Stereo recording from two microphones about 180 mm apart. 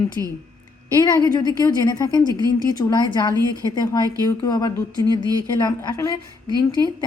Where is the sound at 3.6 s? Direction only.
20° left (ahead or behind).